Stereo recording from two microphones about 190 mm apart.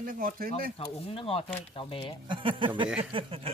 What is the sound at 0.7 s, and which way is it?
Speech, 30° left (ahead or behind).